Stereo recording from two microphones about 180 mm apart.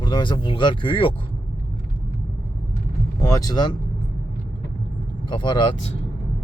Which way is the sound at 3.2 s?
20° left (ahead or behind).